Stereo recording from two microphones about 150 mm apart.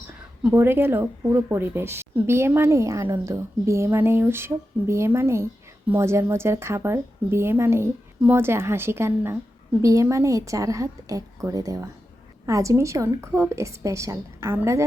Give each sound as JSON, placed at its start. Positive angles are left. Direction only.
{"t": 0.4, "sound": "a woman's voice", "side_deg": -15}